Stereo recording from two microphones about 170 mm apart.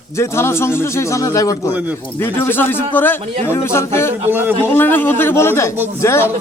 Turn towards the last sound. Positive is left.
turn(degrees=15)  # may be behind; listen again after turning